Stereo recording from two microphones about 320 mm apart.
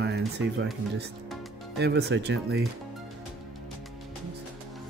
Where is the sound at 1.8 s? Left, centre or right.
Right.